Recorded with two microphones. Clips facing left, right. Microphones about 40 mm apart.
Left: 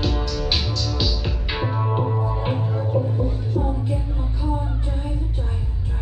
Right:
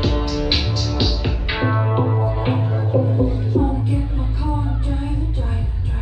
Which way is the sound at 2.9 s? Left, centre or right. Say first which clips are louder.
Right 5 dB; right.